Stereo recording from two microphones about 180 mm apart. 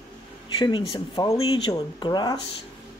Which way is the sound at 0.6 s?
25° left (ahead or behind).